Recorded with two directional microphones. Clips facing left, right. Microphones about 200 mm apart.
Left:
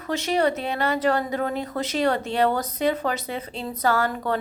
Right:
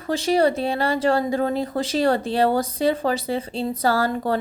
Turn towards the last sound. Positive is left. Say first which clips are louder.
# right 2 dB
turn(degrees=-35)  # may be behind; listen again after turning